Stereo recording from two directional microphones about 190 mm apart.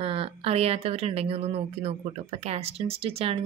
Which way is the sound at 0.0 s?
30° right (ahead or behind).